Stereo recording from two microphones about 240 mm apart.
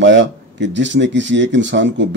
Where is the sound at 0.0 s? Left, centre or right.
Right.